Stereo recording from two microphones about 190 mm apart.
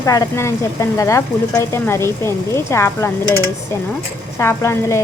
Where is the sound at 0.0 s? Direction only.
15° left (ahead or behind).